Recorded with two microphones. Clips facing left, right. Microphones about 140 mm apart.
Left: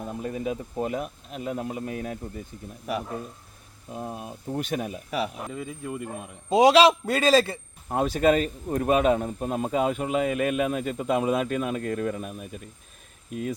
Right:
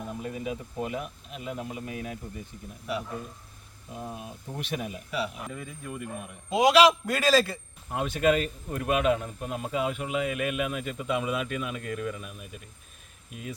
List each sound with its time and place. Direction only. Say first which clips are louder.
0.0 s speech: left 4 dB; 35° left (ahead or behind)
3.9 s speech: left 4 dB; 40° left (ahead or behind)
5.5 s a man's voice: left 5 dB; 25° left (ahead or behind)
7.9 s speech: left 3 dB; 35° left (ahead or behind)